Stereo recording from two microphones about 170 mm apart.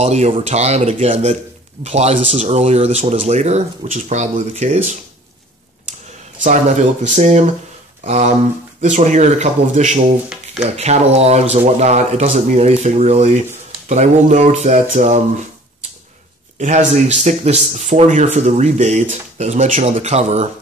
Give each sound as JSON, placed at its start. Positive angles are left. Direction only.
{"t": 0.0, "sound": "speech", "side_deg": -40}
{"t": 6.4, "sound": "speech", "side_deg": -45}
{"t": 16.5, "sound": "speech", "side_deg": -45}